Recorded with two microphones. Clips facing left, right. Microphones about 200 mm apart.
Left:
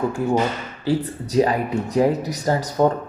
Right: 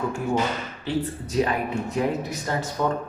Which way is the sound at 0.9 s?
35° left (ahead or behind).